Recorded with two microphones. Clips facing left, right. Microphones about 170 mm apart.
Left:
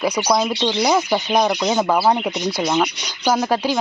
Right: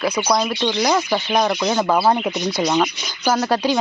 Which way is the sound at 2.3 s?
15° left (ahead or behind).